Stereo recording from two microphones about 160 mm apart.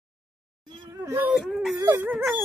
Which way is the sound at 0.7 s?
15° right (ahead or behind).